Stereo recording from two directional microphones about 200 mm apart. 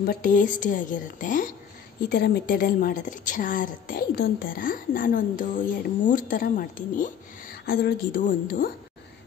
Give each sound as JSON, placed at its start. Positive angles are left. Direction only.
{"t": 0.0, "sound": "a woman's voice", "side_deg": 50}